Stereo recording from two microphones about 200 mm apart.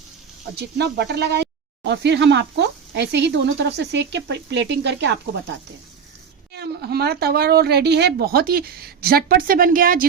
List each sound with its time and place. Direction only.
0.5 s speech: 55° right (ahead or behind)
6.5 s speech: 55° right (ahead or behind)